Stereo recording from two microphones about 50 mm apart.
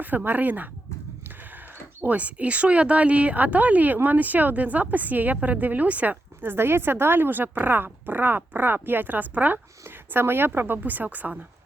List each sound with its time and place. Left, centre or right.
0.3 s a woman's voice: right
2.0 s a woman's voice: right
6.4 s a woman's voice: right
10.1 s a woman's voice: right